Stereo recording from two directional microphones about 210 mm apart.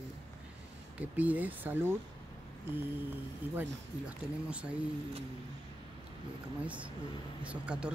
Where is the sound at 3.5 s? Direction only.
5° right (ahead or behind).